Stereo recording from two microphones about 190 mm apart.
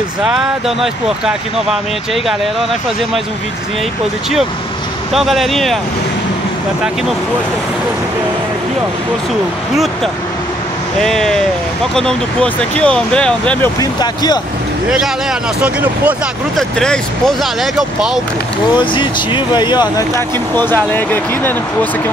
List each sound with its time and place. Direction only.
0.2 s speech: centre (ahead or behind)
5.1 s speech: centre (ahead or behind)
11.0 s speech: centre (ahead or behind)
13.7 s speech: 20° left (ahead or behind)
15.6 s speech: 5° right (ahead or behind)
16.7 s speech: 5° left (ahead or behind)
18.9 s speech: 25° left (ahead or behind)